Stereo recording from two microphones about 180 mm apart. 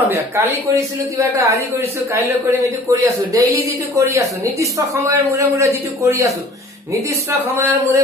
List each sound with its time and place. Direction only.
0.1 s speech: 15° right (ahead or behind)